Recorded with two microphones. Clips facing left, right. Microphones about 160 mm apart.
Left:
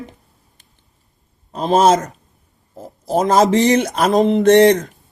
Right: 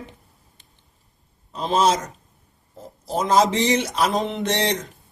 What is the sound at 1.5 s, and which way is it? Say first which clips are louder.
Speech: left 6 dB; 50° left (ahead or behind).